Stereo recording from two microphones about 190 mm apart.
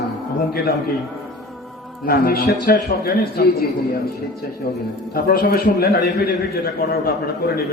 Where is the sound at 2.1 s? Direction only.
55° left (ahead or behind).